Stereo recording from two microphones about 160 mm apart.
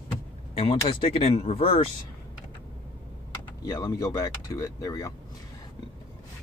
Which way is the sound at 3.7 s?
25° left (ahead or behind).